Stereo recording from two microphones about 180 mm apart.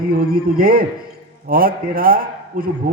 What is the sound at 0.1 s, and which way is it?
A man's voice, 55° right (ahead or behind).